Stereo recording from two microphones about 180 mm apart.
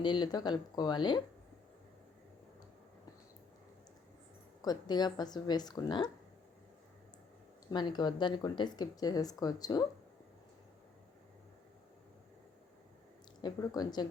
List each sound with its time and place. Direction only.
0.0 s speech: 25° left (ahead or behind)
4.6 s speech: 20° left (ahead or behind)
7.7 s speech: 25° left (ahead or behind)
13.4 s speech: 20° left (ahead or behind)